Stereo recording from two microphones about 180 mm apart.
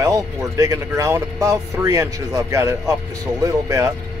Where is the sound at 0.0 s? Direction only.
20° right (ahead or behind).